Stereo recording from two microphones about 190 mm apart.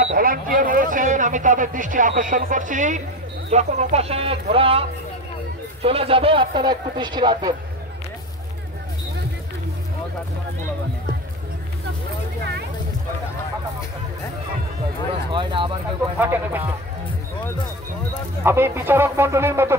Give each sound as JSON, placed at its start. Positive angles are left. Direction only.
{"t": 0.1, "sound": "a man's voice", "side_deg": -50}
{"t": 15.3, "sound": "a man's voice", "side_deg": -25}
{"t": 16.2, "sound": "speech", "side_deg": -10}
{"t": 18.4, "sound": "speech", "side_deg": -10}